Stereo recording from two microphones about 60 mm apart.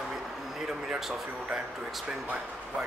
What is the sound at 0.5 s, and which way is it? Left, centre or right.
Speech, centre.